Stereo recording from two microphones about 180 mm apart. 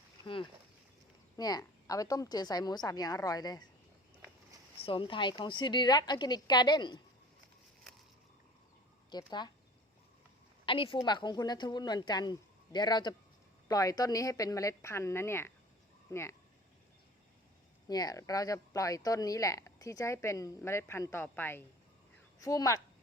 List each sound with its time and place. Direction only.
1.4 s a woman's voice: 20° left (ahead or behind)
4.9 s a woman's voice: 25° left (ahead or behind)
9.0 s speech: 25° left (ahead or behind)
10.7 s a woman's voice: 30° left (ahead or behind)
17.8 s speech: 20° left (ahead or behind)